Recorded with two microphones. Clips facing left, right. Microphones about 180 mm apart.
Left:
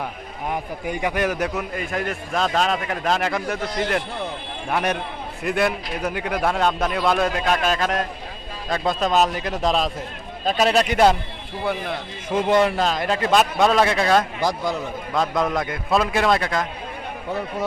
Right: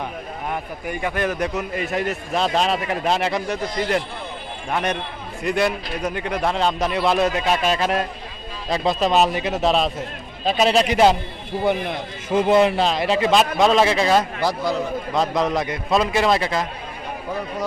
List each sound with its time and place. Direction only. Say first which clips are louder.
0.5 s a man's voice: left 3 dB; 15° left (ahead or behind)
1.7 s a man's voice: right 2 dB; 5° right (ahead or behind)
12.5 s speech: right 2 dB; 5° right (ahead or behind)
14.4 s a man's voice: right 1 dB; 20° left (ahead or behind)
15.1 s speech: right 1 dB; centre (ahead or behind)